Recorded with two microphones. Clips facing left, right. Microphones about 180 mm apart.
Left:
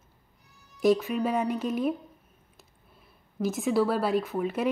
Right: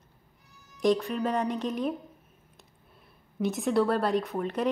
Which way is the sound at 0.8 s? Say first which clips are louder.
Left 2 dB; 5° left (ahead or behind).